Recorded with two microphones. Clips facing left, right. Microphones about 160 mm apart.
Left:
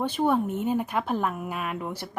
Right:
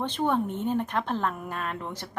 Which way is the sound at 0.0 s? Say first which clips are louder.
Left 2 dB; 10° left (ahead or behind).